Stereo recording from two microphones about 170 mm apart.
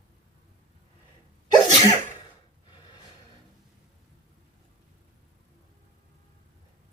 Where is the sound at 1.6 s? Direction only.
20° left (ahead or behind).